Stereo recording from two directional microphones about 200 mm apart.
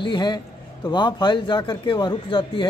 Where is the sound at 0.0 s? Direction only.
20° left (ahead or behind).